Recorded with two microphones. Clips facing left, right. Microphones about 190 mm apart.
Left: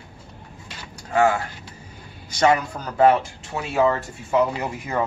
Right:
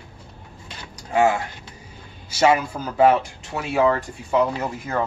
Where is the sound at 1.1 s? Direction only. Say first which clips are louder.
Even; 15° right (ahead or behind).